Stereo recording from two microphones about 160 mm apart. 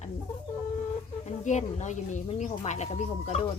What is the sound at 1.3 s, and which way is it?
Speech, 45° left (ahead or behind).